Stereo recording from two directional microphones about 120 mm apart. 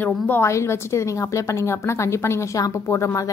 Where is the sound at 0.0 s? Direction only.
20° left (ahead or behind).